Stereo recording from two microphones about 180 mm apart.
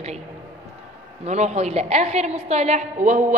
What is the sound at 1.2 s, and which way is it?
A woman's voice, 40° right (ahead or behind).